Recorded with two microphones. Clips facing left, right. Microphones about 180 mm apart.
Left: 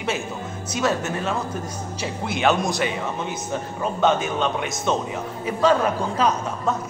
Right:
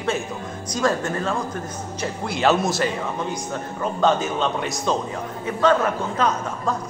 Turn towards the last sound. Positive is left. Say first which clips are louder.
# left 1 dB
turn(degrees=10)  # may be behind; listen again after turning